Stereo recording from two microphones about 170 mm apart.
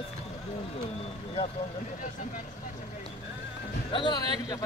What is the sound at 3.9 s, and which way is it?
Speech, 25° left (ahead or behind).